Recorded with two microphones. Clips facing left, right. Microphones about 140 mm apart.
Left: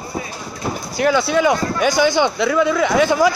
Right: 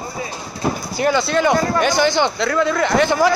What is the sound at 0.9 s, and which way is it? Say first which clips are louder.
Speech: left 2 dB; centre (ahead or behind).